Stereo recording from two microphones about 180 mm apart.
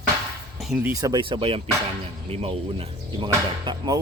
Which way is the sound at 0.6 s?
Centre (ahead or behind).